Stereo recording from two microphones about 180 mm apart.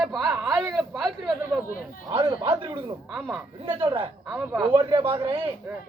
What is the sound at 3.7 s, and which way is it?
Speech, 30° right (ahead or behind).